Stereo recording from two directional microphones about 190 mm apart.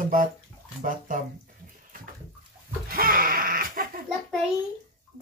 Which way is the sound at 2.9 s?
50° right (ahead or behind).